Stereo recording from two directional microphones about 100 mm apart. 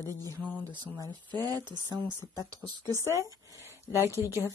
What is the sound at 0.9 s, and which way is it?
Speech, 40° right (ahead or behind).